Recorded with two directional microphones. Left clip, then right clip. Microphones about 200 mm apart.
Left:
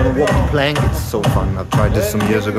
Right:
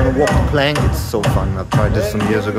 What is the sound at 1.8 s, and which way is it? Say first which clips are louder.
Speech: left 1 dB; 15° left (ahead or behind).